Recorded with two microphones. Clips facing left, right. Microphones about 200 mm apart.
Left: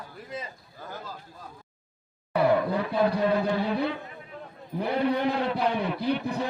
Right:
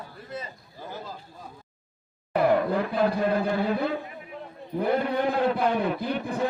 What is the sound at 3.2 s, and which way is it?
Speech, 50° right (ahead or behind).